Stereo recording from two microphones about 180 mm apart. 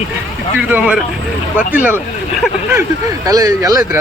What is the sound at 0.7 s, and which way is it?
Speech, 5° right (ahead or behind).